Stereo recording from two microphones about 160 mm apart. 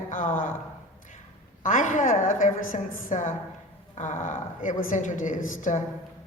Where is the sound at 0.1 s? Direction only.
55° left (ahead or behind).